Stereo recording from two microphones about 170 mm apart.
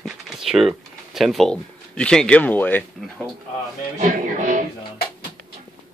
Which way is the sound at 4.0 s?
50° right (ahead or behind).